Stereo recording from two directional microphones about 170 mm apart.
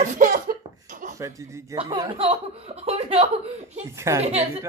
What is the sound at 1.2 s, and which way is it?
Speech, 15° right (ahead or behind).